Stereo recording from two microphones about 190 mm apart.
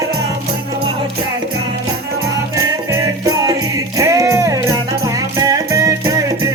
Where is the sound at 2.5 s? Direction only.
15° right (ahead or behind).